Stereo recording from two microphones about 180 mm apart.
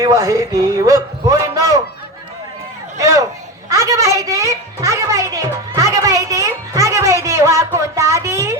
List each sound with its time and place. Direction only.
0.0 s a man's voice: 20° right (ahead or behind)
3.0 s a man's voice: 20° right (ahead or behind)
3.7 s a sound: 15° right (ahead or behind)